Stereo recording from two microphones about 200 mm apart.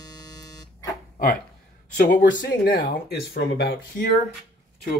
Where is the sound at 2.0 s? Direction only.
45° left (ahead or behind).